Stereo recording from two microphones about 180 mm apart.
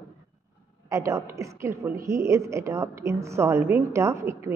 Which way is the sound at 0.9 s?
15° right (ahead or behind).